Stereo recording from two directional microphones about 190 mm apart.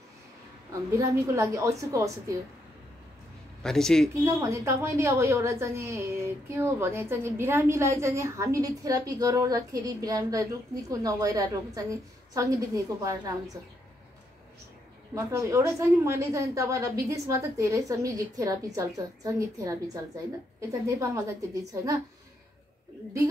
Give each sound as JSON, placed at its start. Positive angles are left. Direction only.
{"t": 0.9, "sound": "a woman's voice", "side_deg": -15}
{"t": 3.6, "sound": "speech", "side_deg": 5}
{"t": 4.2, "sound": "a woman's voice", "side_deg": -15}
{"t": 15.1, "sound": "a woman's voice", "side_deg": -15}